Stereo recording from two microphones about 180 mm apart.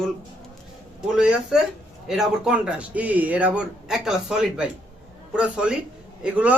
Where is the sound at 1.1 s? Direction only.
5° right (ahead or behind).